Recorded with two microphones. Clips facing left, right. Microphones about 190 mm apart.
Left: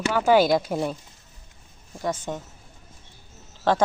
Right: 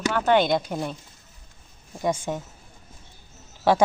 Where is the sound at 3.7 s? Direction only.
10° right (ahead or behind).